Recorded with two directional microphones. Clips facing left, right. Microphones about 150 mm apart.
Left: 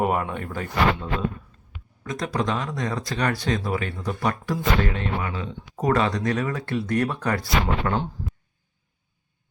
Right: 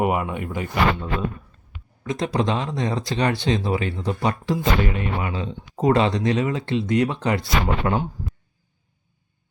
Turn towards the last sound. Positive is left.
turn(degrees=-20)  # may be behind; listen again after turning